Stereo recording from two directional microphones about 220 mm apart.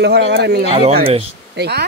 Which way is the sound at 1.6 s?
50° right (ahead or behind).